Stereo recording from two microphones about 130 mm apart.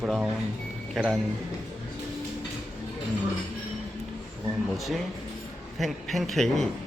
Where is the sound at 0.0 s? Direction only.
5° right (ahead or behind).